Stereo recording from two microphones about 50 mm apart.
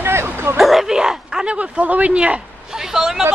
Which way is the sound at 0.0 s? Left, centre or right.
Right.